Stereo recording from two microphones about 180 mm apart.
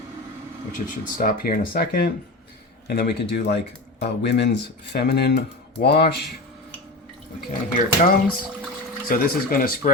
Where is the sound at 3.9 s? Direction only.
70° left (ahead or behind).